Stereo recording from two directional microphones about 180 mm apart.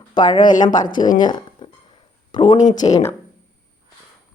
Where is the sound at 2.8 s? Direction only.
20° left (ahead or behind).